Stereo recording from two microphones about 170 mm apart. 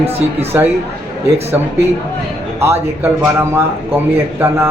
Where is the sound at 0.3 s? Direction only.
15° right (ahead or behind).